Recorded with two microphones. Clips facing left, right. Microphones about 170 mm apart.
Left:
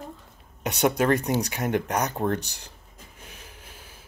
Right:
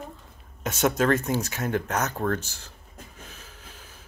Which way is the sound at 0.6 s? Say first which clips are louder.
Left 1 dB; 15° left (ahead or behind).